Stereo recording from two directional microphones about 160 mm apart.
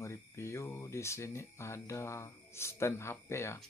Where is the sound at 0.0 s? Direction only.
15° left (ahead or behind).